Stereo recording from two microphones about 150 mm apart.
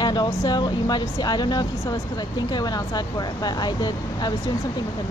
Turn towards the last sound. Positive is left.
turn(degrees=30)  # may be behind; listen again after turning